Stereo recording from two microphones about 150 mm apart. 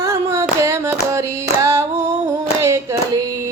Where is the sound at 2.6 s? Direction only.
20° right (ahead or behind).